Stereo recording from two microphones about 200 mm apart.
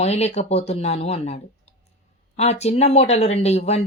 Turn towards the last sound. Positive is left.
turn(degrees=30)  # may be behind; listen again after turning